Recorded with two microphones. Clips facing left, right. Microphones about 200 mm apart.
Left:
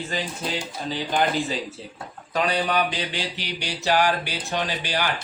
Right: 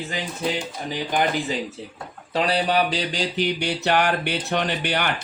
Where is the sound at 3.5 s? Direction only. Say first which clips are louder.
Left 4 dB; 60° right (ahead or behind).